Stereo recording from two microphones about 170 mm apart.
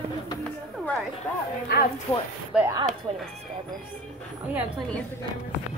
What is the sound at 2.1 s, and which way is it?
Speech, 15° left (ahead or behind).